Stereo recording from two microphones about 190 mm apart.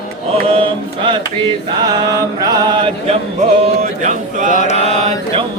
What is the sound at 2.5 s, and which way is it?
Mantra, 30° right (ahead or behind).